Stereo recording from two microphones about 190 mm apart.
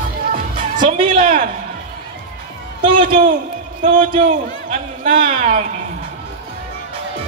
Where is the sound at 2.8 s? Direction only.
25° right (ahead or behind).